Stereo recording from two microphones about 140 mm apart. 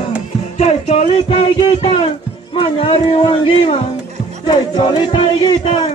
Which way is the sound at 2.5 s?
40° left (ahead or behind).